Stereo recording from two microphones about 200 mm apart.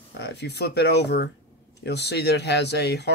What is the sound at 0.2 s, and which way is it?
Speech, 55° left (ahead or behind).